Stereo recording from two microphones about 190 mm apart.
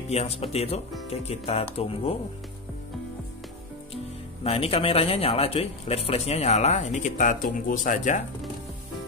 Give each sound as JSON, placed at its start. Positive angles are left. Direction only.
{"t": 0.1, "sound": "speech", "side_deg": 35}
{"t": 3.9, "sound": "speech", "side_deg": 30}